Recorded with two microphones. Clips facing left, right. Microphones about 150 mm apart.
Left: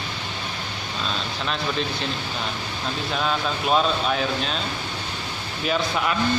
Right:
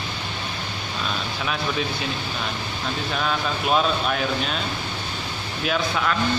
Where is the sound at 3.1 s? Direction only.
Centre (ahead or behind).